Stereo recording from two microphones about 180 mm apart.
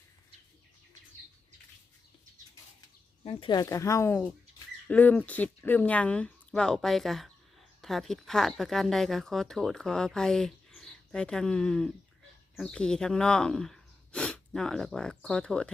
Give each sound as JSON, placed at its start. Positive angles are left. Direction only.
{"t": 3.2, "sound": "speech", "side_deg": 25}